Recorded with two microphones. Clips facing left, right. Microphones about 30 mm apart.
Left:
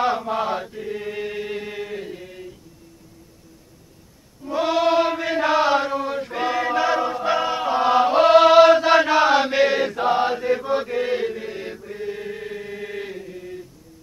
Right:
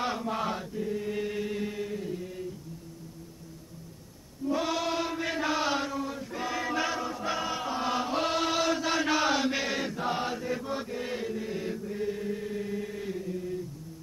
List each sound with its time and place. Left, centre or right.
0.0 s chant: left
4.6 s chant: left
5.2 s chant: left
6.5 s choir: left
6.9 s chant: left
9.0 s chant: left
13.2 s chant: left